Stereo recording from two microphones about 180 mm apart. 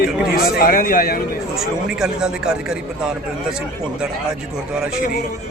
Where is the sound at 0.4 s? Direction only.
55° left (ahead or behind).